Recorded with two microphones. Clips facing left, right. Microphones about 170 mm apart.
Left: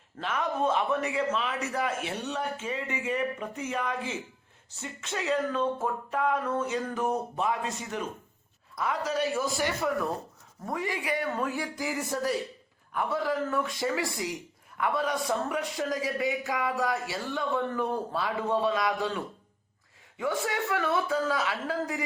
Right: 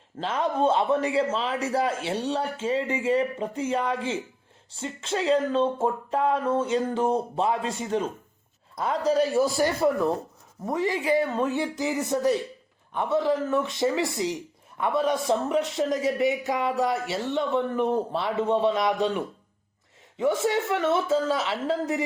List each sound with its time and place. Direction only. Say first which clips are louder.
0.2 s a man's voice: right 4 dB; 30° right (ahead or behind)
10.7 s speech: right 7 dB; 25° right (ahead or behind)